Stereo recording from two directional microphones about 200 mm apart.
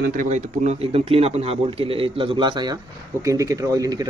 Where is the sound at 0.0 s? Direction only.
40° right (ahead or behind).